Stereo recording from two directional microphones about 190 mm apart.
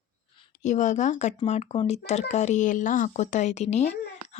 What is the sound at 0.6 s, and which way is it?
Speech, 40° left (ahead or behind).